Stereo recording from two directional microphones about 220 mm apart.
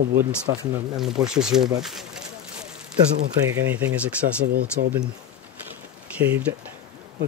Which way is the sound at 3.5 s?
5° right (ahead or behind).